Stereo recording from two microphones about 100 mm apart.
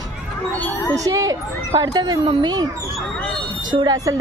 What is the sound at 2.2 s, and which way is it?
Speech, 60° right (ahead or behind).